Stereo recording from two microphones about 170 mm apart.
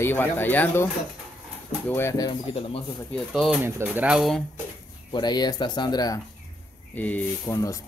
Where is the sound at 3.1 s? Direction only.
Centre (ahead or behind).